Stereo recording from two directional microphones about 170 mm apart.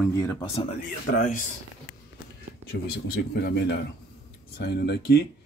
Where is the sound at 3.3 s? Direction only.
70° left (ahead or behind).